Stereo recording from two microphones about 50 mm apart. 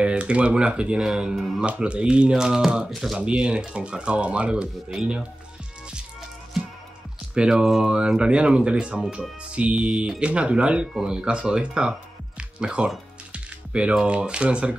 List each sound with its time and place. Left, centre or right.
0.0 s speech: right
1.0 s speech: centre
1.6 s speech: right
2.4 s speech: centre
7.3 s speech: centre
12.4 s music: centre
13.9 s speech: right